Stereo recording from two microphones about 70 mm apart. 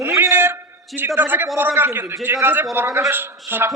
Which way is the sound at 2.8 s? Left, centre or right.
Right.